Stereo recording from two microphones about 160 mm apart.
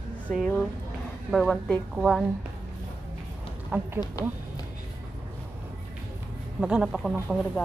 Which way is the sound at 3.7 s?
10° right (ahead or behind).